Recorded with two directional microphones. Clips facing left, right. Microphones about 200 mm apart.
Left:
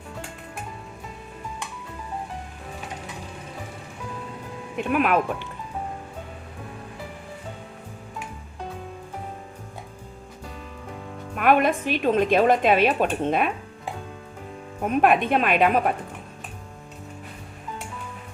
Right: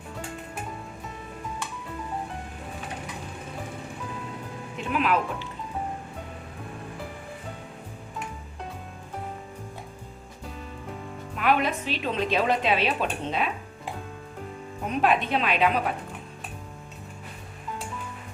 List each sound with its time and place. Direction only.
4.8 s a woman's voice: 55° left (ahead or behind)
11.3 s a woman's voice: 55° left (ahead or behind)
14.8 s a woman's voice: 55° left (ahead or behind)